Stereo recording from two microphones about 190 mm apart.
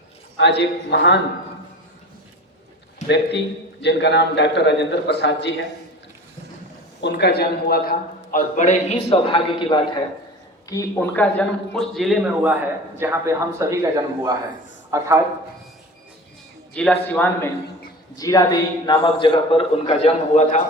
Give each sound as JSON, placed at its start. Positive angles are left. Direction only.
{"t": 0.3, "sound": "a man's voice", "side_deg": 65}
{"t": 3.8, "sound": "a man's voice", "side_deg": 65}
{"t": 7.0, "sound": "a man's voice", "side_deg": 60}
{"t": 10.7, "sound": "a man's voice", "side_deg": 15}
{"t": 16.7, "sound": "a man's voice", "side_deg": 5}
{"t": 18.2, "sound": "a man's voice", "side_deg": 20}